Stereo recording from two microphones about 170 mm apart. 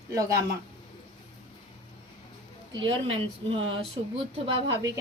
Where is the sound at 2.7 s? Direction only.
30° right (ahead or behind).